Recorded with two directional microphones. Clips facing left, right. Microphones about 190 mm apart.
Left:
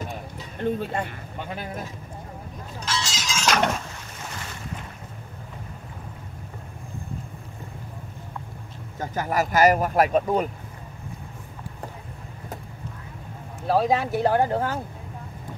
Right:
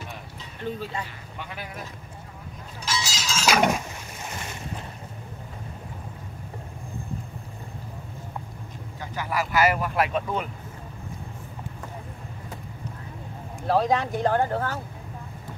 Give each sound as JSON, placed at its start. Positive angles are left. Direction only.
{"t": 0.6, "sound": "speech", "side_deg": 55}
{"t": 2.8, "sound": "a sound", "side_deg": -5}
{"t": 9.0, "sound": "speech", "side_deg": 45}
{"t": 13.7, "sound": "speech", "side_deg": 5}